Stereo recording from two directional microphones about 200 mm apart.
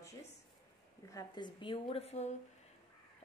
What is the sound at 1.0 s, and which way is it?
A woman's voice, 20° left (ahead or behind).